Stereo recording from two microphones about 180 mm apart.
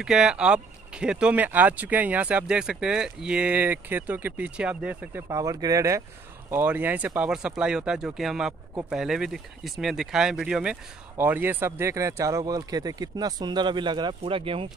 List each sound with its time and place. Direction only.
0.0 s speech: 5° right (ahead or behind)
5.3 s speech: 20° right (ahead or behind)